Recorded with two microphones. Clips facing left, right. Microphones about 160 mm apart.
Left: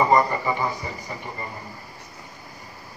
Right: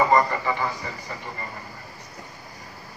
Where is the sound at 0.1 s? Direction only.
15° left (ahead or behind).